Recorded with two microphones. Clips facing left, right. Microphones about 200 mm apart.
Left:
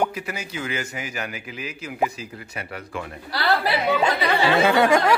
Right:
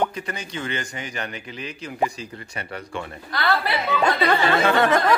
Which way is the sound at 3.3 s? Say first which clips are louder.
Left 1 dB; 35° left (ahead or behind).